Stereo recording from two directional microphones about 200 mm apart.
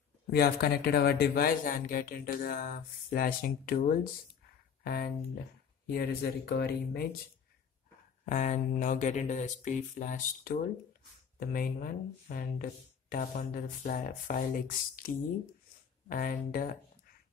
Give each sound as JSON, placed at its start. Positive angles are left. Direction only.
{"t": 0.3, "sound": "speech", "side_deg": 50}
{"t": 8.3, "sound": "speech", "side_deg": 40}